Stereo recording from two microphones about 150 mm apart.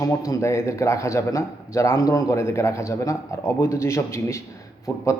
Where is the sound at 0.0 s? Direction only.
20° left (ahead or behind).